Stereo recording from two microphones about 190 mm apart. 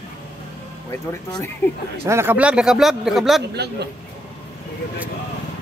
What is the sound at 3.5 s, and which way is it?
Speech, 60° right (ahead or behind).